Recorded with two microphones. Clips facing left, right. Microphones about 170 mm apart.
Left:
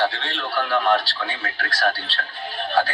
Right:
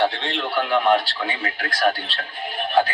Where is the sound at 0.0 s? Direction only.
20° right (ahead or behind).